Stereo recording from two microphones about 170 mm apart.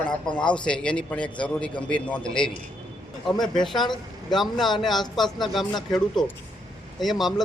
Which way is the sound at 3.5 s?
Centre (ahead or behind).